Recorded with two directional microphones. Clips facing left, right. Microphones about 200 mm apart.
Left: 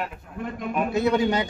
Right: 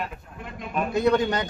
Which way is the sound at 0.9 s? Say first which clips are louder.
Right 1 dB; 5° left (ahead or behind).